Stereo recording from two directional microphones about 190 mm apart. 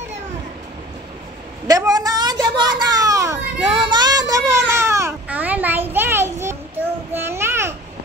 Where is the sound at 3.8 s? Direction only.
20° right (ahead or behind).